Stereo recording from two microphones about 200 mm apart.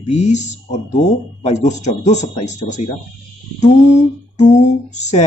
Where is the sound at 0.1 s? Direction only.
35° left (ahead or behind).